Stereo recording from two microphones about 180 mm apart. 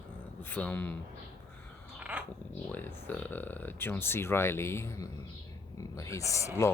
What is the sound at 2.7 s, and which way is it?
Speech, 10° left (ahead or behind).